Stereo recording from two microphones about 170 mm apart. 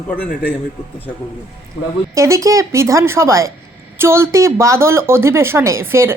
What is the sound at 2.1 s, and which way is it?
A woman's voice, 15° right (ahead or behind).